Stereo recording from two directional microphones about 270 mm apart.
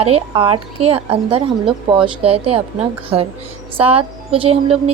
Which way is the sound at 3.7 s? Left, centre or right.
Right.